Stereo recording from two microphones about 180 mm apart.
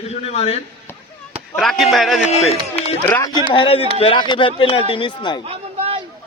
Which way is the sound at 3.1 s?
10° left (ahead or behind).